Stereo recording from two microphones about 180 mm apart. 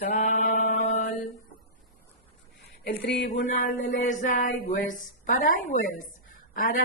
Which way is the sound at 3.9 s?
45° left (ahead or behind).